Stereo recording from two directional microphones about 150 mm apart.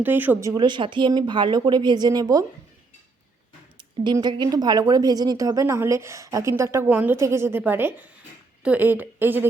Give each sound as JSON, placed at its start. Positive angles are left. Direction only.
{"t": 0.0, "sound": "speech", "side_deg": -10}
{"t": 3.8, "sound": "a woman's voice", "side_deg": -30}